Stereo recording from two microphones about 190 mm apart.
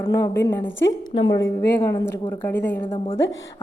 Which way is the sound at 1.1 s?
30° left (ahead or behind).